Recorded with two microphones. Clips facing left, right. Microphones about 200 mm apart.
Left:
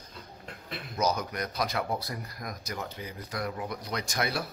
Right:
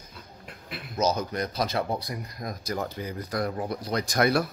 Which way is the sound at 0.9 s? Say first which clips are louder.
Right 3 dB; 25° right (ahead or behind).